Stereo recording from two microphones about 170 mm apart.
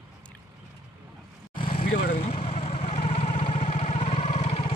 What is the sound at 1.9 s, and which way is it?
Vehicle, 65° left (ahead or behind).